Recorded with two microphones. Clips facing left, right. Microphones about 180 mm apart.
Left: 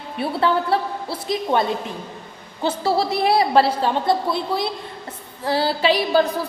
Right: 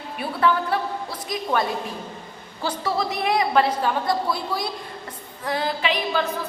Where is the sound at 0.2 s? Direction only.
30° left (ahead or behind).